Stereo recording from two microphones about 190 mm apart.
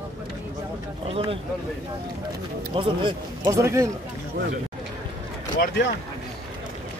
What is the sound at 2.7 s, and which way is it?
Speech, 25° right (ahead or behind).